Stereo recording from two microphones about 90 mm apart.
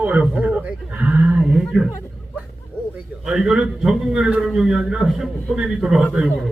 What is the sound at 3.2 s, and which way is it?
A man's voice, 5° right (ahead or behind).